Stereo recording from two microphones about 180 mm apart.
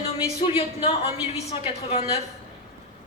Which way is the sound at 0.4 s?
30° left (ahead or behind).